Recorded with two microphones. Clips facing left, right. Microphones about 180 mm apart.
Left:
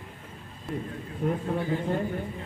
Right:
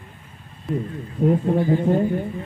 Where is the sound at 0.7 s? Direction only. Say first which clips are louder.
Right 8 dB; centre (ahead or behind).